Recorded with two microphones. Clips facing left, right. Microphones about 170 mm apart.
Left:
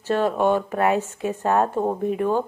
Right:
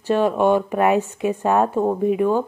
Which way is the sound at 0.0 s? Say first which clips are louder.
Right 3 dB; 15° right (ahead or behind).